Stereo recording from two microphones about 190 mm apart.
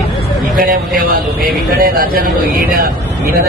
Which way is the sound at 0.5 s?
50° right (ahead or behind).